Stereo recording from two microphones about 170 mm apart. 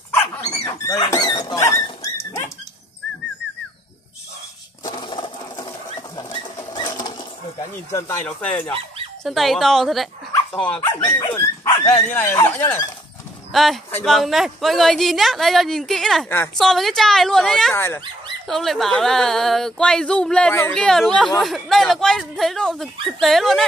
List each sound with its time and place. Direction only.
0.7 s speech: 20° left (ahead or behind)
4.8 s sewing machine: 25° left (ahead or behind)
7.9 s speech: 15° left (ahead or behind)
10.9 s speech: 15° left (ahead or behind)
13.5 s speech: centre (ahead or behind)
17.7 s speech: 15° left (ahead or behind)
18.5 s speech: centre (ahead or behind)